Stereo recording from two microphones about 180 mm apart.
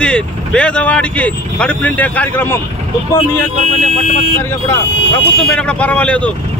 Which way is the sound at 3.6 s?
35° right (ahead or behind).